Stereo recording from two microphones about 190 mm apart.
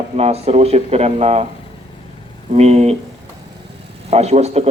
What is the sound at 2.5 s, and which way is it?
Speech, 35° right (ahead or behind).